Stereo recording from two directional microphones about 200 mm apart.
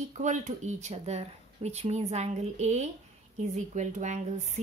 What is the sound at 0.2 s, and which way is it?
A woman's voice, 35° right (ahead or behind).